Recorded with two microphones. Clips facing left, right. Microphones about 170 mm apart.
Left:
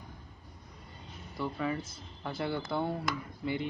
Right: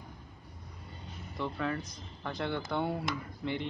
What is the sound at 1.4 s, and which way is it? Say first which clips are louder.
A man's voice: left 1 dB; 5° left (ahead or behind).